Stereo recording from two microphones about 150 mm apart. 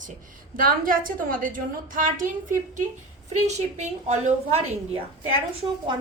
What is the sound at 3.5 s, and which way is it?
A woman's voice, 50° right (ahead or behind).